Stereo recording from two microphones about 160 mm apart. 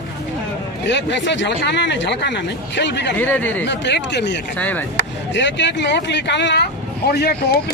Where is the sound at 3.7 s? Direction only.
90° left.